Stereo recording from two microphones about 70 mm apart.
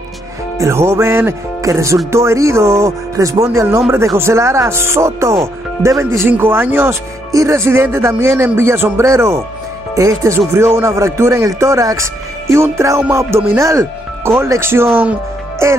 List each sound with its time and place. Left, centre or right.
0.6 s speech: right
1.6 s music: right
2.0 s speech: right
6.2 s speech: right
7.3 s speech: right